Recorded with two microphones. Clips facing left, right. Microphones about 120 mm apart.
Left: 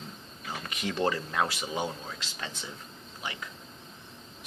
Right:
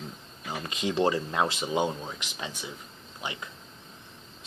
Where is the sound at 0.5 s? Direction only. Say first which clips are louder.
Right 4 dB; 20° right (ahead or behind).